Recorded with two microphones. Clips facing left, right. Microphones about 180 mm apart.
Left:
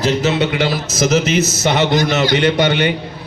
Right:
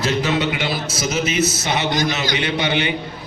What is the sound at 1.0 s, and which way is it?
A man's voice, 75° left (ahead or behind).